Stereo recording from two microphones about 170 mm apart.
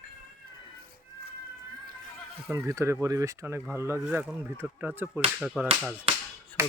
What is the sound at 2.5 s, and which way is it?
Speech, 15° right (ahead or behind).